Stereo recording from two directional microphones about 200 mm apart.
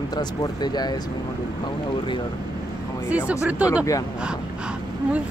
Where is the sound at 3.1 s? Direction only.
5° right (ahead or behind).